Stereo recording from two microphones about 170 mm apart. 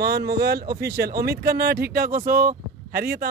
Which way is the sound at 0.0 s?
70° right (ahead or behind).